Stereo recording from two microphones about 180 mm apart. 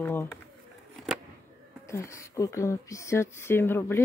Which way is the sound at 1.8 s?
15° left (ahead or behind).